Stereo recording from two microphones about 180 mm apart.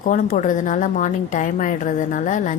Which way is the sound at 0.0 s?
45° left (ahead or behind).